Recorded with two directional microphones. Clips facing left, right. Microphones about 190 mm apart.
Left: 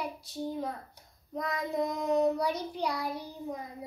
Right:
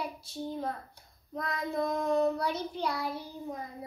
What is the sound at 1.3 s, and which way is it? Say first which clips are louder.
Child singing: left 1 dB; 15° left (ahead or behind).